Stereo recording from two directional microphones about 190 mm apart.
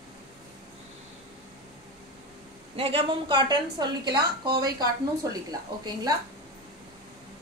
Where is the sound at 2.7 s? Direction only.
30° right (ahead or behind).